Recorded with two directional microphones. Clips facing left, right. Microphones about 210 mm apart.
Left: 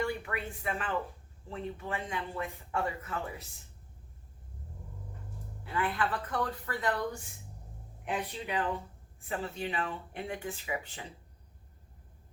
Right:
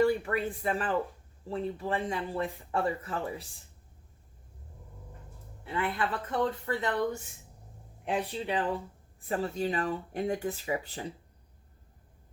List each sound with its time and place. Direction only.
0.0 s a man's voice: 35° right (ahead or behind)
5.6 s speech: 25° right (ahead or behind)
8.3 s a man's voice: 30° right (ahead or behind)